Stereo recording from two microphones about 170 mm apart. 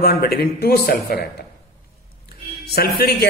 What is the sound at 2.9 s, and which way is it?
Speech, 70° left (ahead or behind).